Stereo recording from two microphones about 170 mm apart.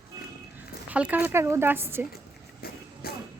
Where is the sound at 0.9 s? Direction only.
10° right (ahead or behind).